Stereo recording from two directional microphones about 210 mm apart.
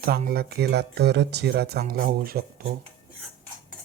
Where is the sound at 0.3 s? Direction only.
45° right (ahead or behind).